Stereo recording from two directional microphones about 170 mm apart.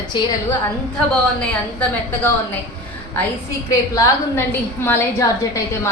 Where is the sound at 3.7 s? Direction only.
20° left (ahead or behind).